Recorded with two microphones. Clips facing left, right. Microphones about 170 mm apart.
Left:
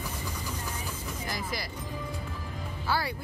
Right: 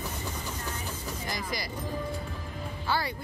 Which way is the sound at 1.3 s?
5° left (ahead or behind).